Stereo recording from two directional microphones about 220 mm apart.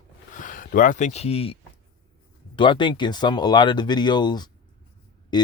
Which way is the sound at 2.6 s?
20° left (ahead or behind).